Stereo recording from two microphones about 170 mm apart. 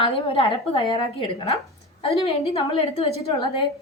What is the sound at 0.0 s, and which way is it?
A woman's voice, 30° left (ahead or behind).